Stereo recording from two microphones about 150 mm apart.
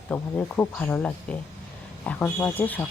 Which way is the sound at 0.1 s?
10° left (ahead or behind).